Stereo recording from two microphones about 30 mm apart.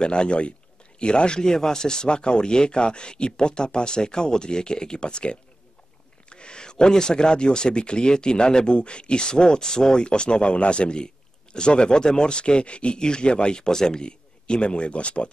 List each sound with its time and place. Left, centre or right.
0.0 s speech: left